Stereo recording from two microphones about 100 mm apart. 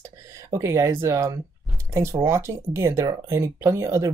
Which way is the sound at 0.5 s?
30° right (ahead or behind).